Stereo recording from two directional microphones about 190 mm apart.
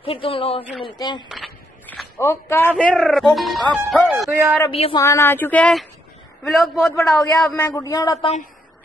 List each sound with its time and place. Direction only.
0.0 s speech: 30° left (ahead or behind)
1.3 s a sound: centre (ahead or behind)
2.1 s speech: 15° left (ahead or behind)
4.6 s speech: 30° left (ahead or behind)
4.9 s speech: 15° left (ahead or behind)